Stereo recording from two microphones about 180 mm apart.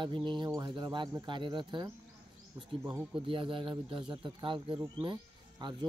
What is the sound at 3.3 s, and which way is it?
Speech, 30° right (ahead or behind).